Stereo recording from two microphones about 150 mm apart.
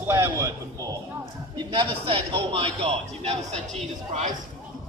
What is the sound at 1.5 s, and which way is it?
A man's voice, 35° right (ahead or behind).